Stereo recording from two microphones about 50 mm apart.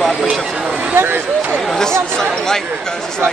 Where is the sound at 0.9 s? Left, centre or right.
Right.